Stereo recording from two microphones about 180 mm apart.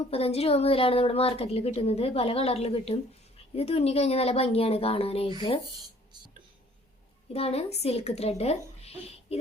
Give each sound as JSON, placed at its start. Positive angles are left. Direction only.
{"t": 0.1, "sound": "a woman's voice", "side_deg": 35}
{"t": 7.3, "sound": "a woman's voice", "side_deg": 35}